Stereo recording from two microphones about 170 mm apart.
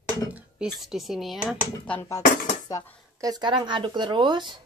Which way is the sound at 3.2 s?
25° right (ahead or behind).